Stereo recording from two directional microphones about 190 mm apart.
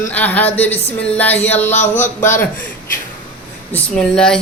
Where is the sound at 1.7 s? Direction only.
40° left (ahead or behind).